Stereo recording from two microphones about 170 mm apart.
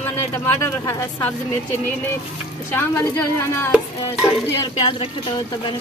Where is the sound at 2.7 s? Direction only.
15° left (ahead or behind).